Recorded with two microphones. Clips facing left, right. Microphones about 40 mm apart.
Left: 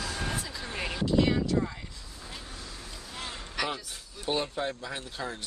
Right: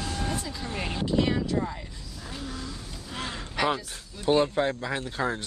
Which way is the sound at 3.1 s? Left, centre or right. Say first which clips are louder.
Right 5 dB; right.